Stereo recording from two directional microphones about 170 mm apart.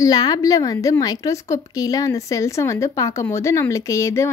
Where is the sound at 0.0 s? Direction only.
25° left (ahead or behind).